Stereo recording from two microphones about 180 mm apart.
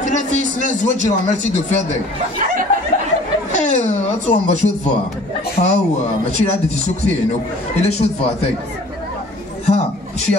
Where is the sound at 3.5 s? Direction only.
40° left (ahead or behind).